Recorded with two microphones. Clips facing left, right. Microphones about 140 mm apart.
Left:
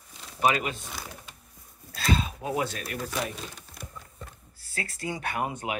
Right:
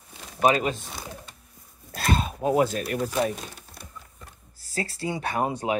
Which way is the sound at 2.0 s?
55° right (ahead or behind).